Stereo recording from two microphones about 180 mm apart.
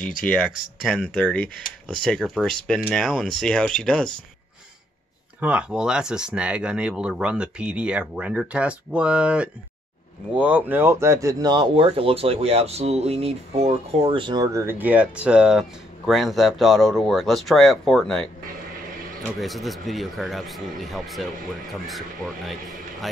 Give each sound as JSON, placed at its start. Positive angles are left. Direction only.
{"t": 0.0, "sound": "speech", "side_deg": 5}
{"t": 5.4, "sound": "speech", "side_deg": -5}
{"t": 19.2, "sound": "speech", "side_deg": 0}